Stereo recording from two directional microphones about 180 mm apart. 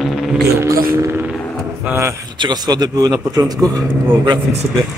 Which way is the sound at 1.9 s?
15° right (ahead or behind).